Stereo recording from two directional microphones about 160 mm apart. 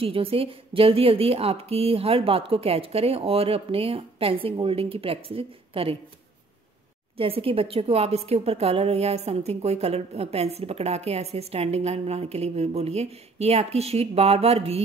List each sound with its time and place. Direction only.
0.0 s a woman's voice: 35° right (ahead or behind)
7.2 s a woman's voice: 35° right (ahead or behind)